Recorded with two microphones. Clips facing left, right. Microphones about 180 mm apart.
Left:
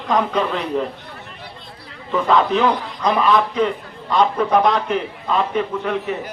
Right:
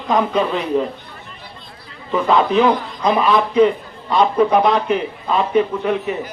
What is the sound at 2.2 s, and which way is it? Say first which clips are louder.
A man's voice: right 2 dB; 10° right (ahead or behind).